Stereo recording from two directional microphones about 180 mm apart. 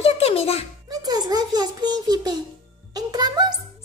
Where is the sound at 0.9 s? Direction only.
20° right (ahead or behind).